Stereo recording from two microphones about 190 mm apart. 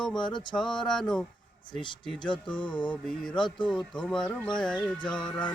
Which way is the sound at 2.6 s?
25° left (ahead or behind).